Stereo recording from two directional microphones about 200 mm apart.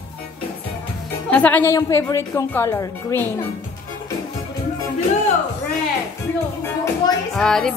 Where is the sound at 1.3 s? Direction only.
10° left (ahead or behind).